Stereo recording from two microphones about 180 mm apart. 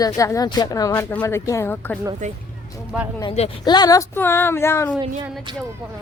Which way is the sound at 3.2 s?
30° left (ahead or behind).